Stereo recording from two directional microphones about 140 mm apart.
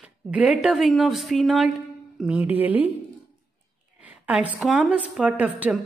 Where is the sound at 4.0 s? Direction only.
10° right (ahead or behind).